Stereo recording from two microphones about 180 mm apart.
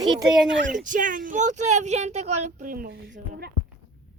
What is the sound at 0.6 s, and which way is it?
Speech, 45° right (ahead or behind).